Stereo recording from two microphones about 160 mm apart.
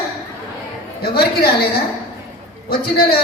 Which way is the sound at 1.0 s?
75° left (ahead or behind).